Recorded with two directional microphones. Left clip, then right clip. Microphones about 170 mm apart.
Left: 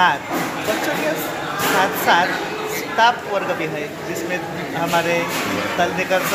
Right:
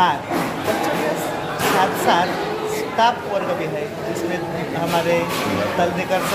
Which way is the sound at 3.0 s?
20° left (ahead or behind).